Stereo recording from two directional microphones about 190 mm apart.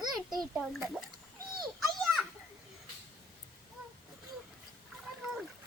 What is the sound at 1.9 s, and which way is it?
Children playing, centre (ahead or behind).